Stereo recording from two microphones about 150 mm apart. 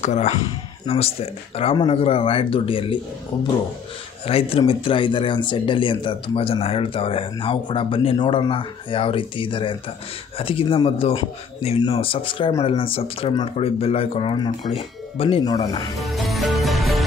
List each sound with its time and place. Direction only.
0.0 s speech: 50° left (ahead or behind)
4.3 s speech: 40° left (ahead or behind)
16.0 s music: centre (ahead or behind)